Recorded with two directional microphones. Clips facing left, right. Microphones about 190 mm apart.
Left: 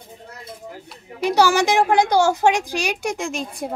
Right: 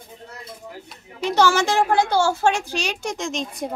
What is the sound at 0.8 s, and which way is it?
A woman's voice, 10° left (ahead or behind).